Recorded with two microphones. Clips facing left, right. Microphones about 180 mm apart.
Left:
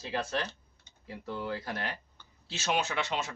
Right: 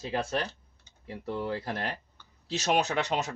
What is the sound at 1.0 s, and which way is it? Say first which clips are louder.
Speech: right 3 dB; 30° right (ahead or behind).